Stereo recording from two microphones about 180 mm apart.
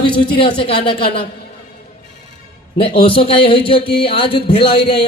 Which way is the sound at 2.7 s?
30° left (ahead or behind).